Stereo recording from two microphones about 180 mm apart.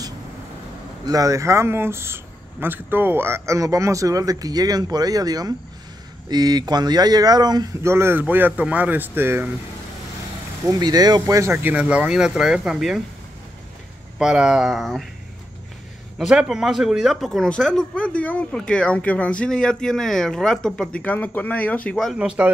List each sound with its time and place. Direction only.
1.0 s speech: 20° right (ahead or behind)
10.6 s speech: 20° right (ahead or behind); by 13.0 s 5° right (ahead or behind)
14.1 s speech: 5° right (ahead or behind)
16.2 s speech: 5° right (ahead or behind)